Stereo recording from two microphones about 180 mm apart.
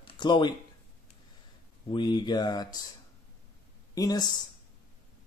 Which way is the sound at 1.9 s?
25° left (ahead or behind).